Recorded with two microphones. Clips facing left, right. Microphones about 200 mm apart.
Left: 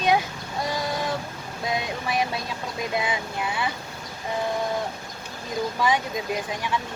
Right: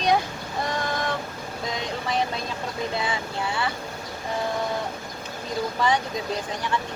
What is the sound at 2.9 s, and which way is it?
Child singing, 20° left (ahead or behind).